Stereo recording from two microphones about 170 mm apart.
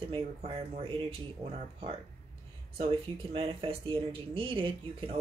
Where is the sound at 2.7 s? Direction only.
35° right (ahead or behind).